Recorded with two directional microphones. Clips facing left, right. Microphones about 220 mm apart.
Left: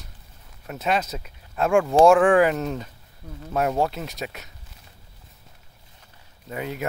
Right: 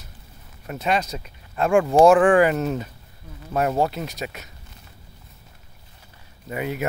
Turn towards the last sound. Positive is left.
turn(degrees=-5)  # may be behind; listen again after turning